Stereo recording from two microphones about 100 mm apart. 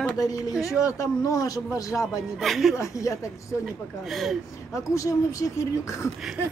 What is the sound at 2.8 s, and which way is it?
Speech, 30° left (ahead or behind).